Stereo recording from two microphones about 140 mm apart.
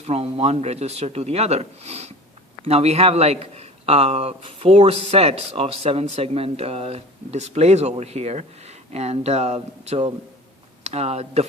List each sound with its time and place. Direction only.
0.0 s speech: 50° right (ahead or behind)